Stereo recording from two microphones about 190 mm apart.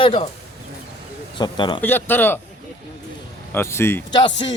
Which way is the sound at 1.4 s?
25° left (ahead or behind).